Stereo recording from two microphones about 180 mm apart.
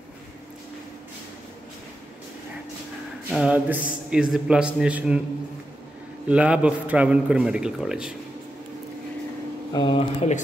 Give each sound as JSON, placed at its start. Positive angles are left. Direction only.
{"t": 3.3, "sound": "a man's voice", "side_deg": -5}
{"t": 6.2, "sound": "a man's voice", "side_deg": -5}
{"t": 9.7, "sound": "speech", "side_deg": 25}